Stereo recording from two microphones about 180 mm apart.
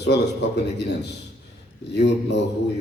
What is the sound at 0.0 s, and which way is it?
A man's voice, 70° left (ahead or behind).